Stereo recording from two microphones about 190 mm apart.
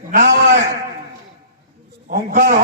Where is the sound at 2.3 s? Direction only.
50° right (ahead or behind).